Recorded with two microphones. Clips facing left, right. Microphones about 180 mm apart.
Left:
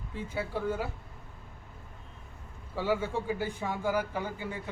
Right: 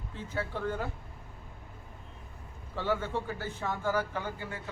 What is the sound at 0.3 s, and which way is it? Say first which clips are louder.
Speech: left 1 dB; 10° left (ahead or behind).